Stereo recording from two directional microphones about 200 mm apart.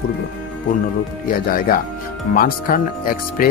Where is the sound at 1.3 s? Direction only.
45° left (ahead or behind).